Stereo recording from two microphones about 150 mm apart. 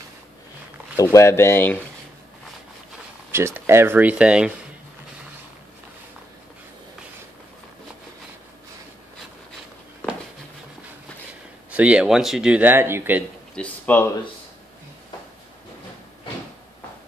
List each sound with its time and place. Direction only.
0.9 s speech: 20° left (ahead or behind)
3.3 s speech: 15° right (ahead or behind)
11.7 s speech: 10° right (ahead or behind)
13.6 s speech: 10° left (ahead or behind)